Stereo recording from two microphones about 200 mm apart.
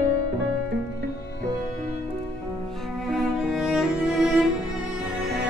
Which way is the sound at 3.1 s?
Centre (ahead or behind).